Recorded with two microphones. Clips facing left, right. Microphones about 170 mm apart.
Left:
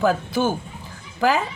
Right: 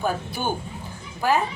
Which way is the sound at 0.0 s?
90° left.